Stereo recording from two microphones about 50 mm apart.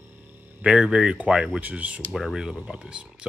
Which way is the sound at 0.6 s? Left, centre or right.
Centre.